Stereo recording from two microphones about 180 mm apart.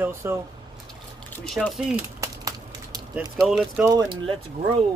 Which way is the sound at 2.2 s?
20° right (ahead or behind).